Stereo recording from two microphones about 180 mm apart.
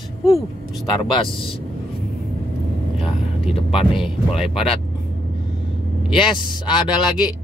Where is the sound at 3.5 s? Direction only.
5° right (ahead or behind).